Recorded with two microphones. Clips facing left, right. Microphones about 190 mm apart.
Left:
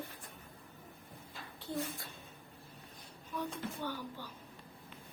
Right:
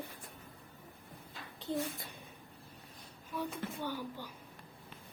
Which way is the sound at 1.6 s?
20° right (ahead or behind).